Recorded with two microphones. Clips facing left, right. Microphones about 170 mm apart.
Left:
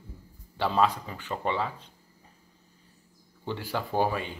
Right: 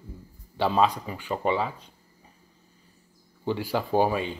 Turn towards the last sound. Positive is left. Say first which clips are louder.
# right 4 dB
turn(degrees=-15)  # may be behind; listen again after turning